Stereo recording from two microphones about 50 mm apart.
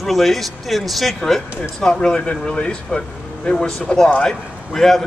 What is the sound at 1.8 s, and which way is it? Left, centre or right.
A man's voice, centre.